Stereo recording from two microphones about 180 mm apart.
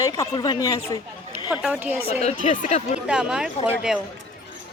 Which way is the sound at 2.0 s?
35° left (ahead or behind).